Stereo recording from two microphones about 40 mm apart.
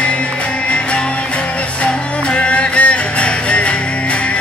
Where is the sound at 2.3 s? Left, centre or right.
Left.